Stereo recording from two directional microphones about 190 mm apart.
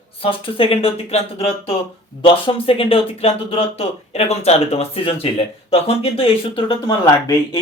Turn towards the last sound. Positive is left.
turn(degrees=20)  # may be behind; listen again after turning